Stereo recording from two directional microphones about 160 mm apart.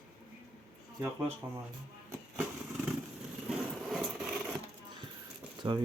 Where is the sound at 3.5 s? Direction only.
5° right (ahead or behind).